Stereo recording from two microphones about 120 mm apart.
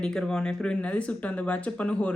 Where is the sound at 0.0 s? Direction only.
5° left (ahead or behind).